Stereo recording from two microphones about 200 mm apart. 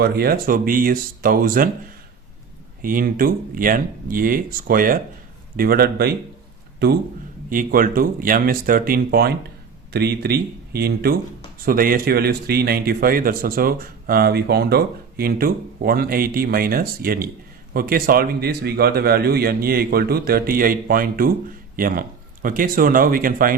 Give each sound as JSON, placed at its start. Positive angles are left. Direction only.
{"t": 0.0, "sound": "a man's voice", "side_deg": -50}
{"t": 2.8, "sound": "a man's voice", "side_deg": -45}
{"t": 7.5, "sound": "a man's voice", "side_deg": -45}